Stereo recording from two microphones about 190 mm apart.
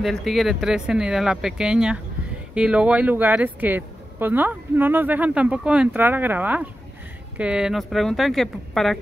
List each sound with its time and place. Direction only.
0.0 s speech: centre (ahead or behind)